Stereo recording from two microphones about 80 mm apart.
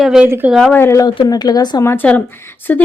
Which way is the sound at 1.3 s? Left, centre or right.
Left.